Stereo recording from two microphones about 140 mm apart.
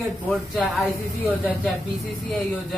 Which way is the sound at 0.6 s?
10° left (ahead or behind).